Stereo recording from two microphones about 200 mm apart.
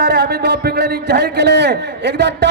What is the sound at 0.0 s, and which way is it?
Speech, 55° right (ahead or behind).